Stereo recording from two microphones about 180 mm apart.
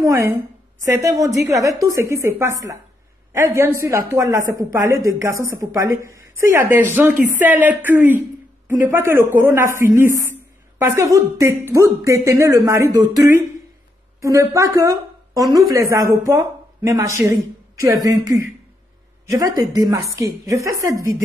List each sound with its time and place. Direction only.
0.0 s a woman's voice: 15° right (ahead or behind)